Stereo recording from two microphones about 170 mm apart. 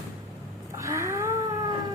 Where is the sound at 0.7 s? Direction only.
15° right (ahead or behind).